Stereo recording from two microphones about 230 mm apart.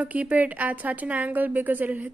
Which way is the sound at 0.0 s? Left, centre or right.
Centre.